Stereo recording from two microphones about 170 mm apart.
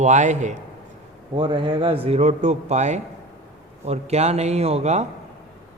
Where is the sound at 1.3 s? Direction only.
30° right (ahead or behind).